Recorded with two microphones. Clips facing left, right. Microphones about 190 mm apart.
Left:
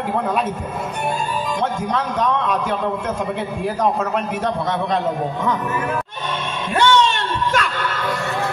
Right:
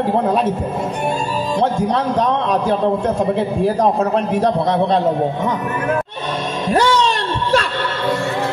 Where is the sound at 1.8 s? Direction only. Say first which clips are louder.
Right 4 dB; 35° right (ahead or behind).